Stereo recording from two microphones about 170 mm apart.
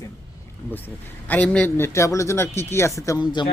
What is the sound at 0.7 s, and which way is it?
A man's voice, 10° left (ahead or behind).